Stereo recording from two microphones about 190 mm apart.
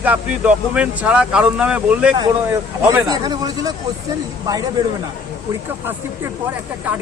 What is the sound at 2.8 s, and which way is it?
Speech, 20° right (ahead or behind).